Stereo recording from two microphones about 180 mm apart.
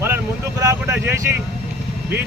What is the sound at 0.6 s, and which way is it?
Speech, 15° right (ahead or behind).